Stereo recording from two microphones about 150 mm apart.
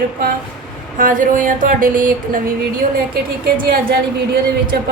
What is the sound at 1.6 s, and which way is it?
Speech, 65° right (ahead or behind).